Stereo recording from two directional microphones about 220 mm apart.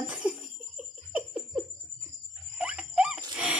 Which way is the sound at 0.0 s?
5° right (ahead or behind).